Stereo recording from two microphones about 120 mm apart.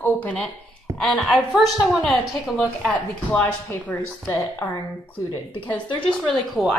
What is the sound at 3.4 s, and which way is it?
Speech, 20° left (ahead or behind).